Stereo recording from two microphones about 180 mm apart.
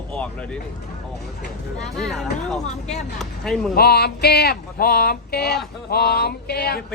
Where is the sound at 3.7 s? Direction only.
60° left (ahead or behind).